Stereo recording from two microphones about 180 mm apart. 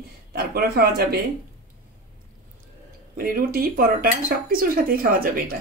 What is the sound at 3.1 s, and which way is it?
Speech, 55° right (ahead or behind).